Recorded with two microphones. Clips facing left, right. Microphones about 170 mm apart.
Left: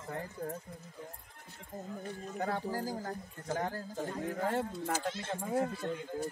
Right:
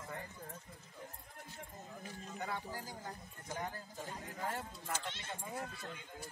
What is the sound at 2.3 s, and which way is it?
Speech, 45° left (ahead or behind).